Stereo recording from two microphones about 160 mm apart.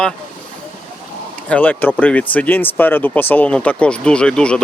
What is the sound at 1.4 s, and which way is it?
Speech, 10° left (ahead or behind).